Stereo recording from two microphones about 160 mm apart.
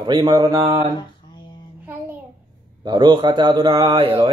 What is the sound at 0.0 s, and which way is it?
Speech, 25° right (ahead or behind).